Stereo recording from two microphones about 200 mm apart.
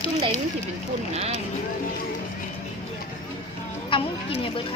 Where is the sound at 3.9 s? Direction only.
25° left (ahead or behind).